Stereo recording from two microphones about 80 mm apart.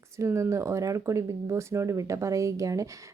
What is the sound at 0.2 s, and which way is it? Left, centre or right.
Speech, right.